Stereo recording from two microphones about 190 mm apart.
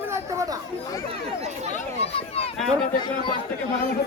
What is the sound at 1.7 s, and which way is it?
Speech, 30° left (ahead or behind).